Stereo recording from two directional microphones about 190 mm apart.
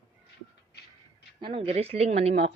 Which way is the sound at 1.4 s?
30° right (ahead or behind).